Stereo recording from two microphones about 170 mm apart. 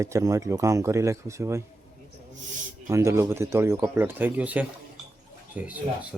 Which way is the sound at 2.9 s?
15° right (ahead or behind).